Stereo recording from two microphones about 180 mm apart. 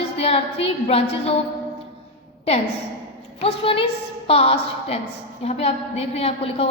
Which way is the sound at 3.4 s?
30° left (ahead or behind).